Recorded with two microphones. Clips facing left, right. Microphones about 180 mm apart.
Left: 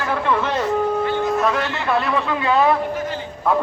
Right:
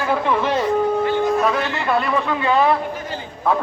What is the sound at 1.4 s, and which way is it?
A man's voice, centre (ahead or behind).